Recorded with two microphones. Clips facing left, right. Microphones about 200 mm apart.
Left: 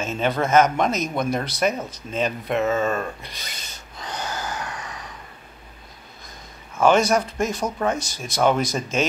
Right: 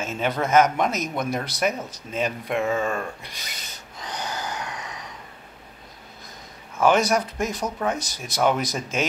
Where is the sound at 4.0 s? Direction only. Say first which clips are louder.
Left 1 dB; 15° right (ahead or behind).